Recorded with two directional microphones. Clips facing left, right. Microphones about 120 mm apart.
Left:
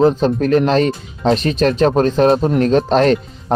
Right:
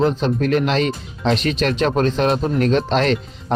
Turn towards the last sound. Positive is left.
turn(degrees=40)  # may be behind; listen again after turning